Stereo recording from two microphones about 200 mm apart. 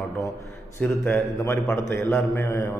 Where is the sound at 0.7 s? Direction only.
10° left (ahead or behind).